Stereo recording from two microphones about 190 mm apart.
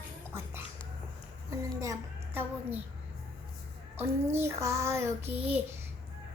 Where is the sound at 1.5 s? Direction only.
15° right (ahead or behind).